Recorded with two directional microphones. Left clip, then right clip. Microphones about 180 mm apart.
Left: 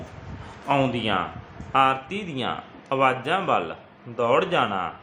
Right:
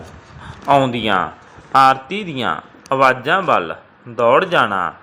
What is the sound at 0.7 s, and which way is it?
A man's voice, 35° right (ahead or behind).